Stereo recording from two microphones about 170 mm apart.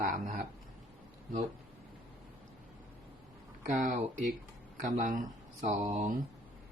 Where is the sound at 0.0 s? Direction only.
55° right (ahead or behind).